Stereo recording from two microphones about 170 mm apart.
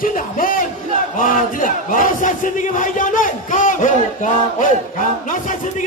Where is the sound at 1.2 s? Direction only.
50° left (ahead or behind).